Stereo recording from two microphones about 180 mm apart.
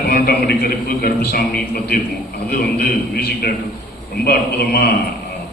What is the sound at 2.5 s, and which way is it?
A man's voice, 60° left (ahead or behind).